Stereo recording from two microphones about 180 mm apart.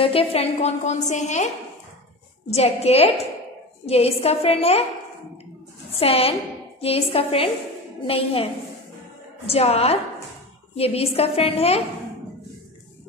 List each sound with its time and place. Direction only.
0.0 s a woman's voice: 30° left (ahead or behind)
2.5 s a woman's voice: 35° left (ahead or behind)
5.9 s a woman's voice: 35° left (ahead or behind)
9.5 s a woman's voice: 35° left (ahead or behind)